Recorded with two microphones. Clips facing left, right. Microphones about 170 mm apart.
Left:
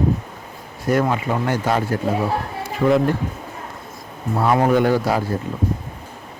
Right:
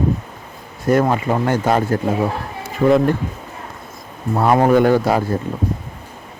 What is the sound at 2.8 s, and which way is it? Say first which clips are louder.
Speech: right 3 dB; 35° right (ahead or behind).